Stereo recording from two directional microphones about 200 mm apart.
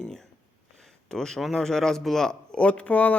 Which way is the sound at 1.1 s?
5° left (ahead or behind).